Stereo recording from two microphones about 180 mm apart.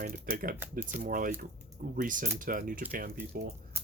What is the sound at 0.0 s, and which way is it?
Speech, 50° right (ahead or behind).